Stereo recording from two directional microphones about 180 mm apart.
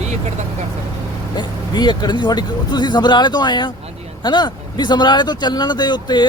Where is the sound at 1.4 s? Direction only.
25° left (ahead or behind).